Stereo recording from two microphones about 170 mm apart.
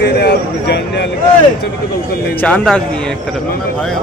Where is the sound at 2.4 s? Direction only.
10° left (ahead or behind).